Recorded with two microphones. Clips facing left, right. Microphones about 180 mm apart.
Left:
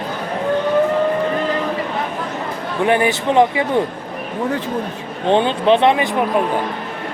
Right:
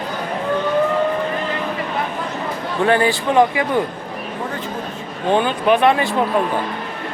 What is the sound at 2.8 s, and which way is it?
Speech, 20° left (ahead or behind).